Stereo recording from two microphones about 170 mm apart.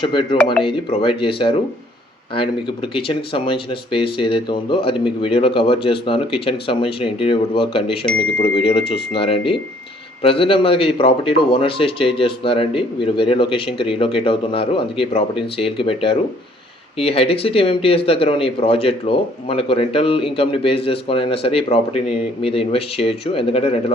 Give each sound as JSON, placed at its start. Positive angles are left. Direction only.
{"t": 0.0, "sound": "a man's voice", "side_deg": 30}